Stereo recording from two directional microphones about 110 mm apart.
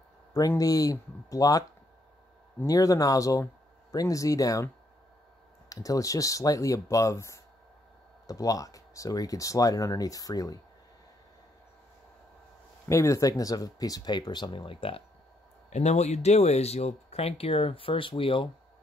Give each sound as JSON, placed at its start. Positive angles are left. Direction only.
{"t": 0.3, "sound": "speech", "side_deg": 30}
{"t": 2.6, "sound": "speech", "side_deg": 30}
{"t": 5.7, "sound": "speech", "side_deg": 30}
{"t": 12.8, "sound": "speech", "side_deg": 25}
{"t": 15.7, "sound": "speech", "side_deg": 90}